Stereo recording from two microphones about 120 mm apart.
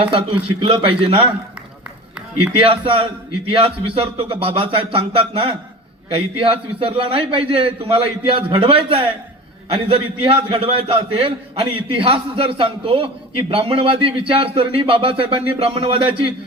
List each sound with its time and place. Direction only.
0.0 s a man's voice: 50° right (ahead or behind)
2.6 s a man's voice: 50° right (ahead or behind)